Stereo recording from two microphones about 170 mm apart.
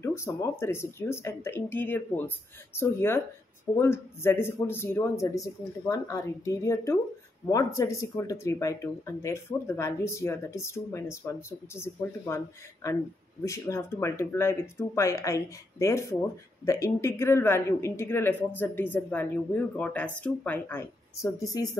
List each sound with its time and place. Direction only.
0.0 s speech: 15° left (ahead or behind)